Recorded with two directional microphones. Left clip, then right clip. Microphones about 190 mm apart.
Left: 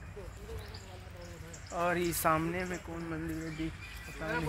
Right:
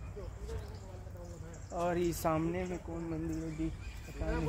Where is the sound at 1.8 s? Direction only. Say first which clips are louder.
Left 2 dB; centre (ahead or behind).